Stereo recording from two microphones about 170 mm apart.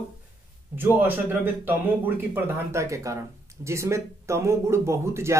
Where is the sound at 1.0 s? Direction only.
10° right (ahead or behind).